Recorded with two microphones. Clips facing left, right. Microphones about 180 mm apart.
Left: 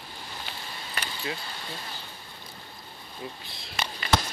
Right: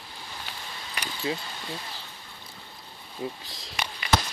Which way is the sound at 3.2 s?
25° right (ahead or behind).